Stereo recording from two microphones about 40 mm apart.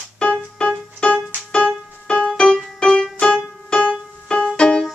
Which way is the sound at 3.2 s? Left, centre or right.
Centre.